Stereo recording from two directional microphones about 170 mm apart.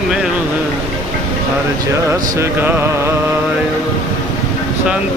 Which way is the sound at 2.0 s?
15° right (ahead or behind).